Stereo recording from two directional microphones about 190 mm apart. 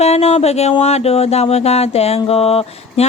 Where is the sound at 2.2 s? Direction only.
30° left (ahead or behind).